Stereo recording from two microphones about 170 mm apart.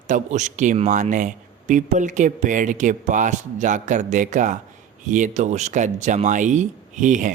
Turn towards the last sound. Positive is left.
turn(degrees=-50)  # may be behind; listen again after turning